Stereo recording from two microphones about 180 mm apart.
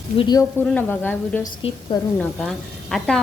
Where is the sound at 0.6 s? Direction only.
10° left (ahead or behind).